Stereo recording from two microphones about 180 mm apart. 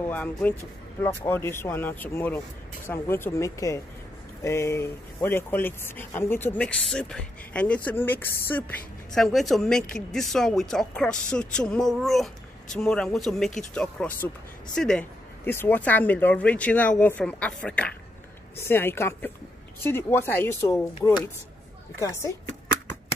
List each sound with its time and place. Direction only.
0.0 s speech: 10° left (ahead or behind)